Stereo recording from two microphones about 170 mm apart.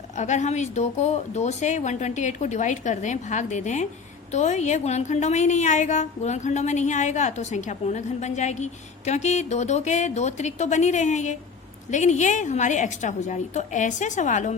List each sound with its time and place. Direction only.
0.2 s a woman's voice: 45° left (ahead or behind)